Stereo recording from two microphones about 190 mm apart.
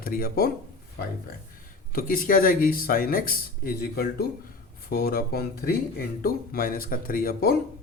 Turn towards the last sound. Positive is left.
turn(degrees=50)  # may be behind; listen again after turning